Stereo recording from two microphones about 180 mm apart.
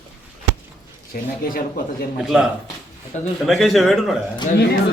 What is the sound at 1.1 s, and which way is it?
Speech, 55° left (ahead or behind).